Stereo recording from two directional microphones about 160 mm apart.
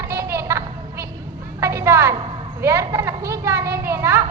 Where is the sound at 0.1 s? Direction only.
20° right (ahead or behind).